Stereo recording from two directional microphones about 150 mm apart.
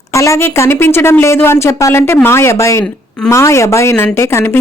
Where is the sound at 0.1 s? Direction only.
20° left (ahead or behind).